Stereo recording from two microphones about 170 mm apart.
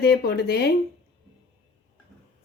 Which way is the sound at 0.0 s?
70° left (ahead or behind).